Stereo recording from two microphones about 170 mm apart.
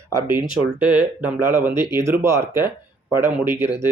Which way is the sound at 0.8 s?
5° right (ahead or behind).